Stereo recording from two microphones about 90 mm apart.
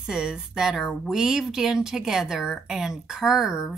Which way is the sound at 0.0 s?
10° right (ahead or behind).